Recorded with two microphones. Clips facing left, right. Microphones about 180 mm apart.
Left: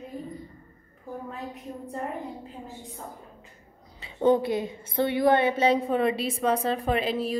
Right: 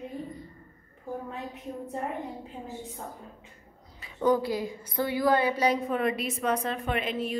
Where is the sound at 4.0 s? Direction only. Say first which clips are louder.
Left 3 dB; 25° left (ahead or behind).